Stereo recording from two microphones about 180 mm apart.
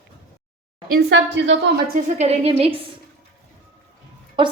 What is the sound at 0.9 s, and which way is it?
A woman's voice, 70° right (ahead or behind).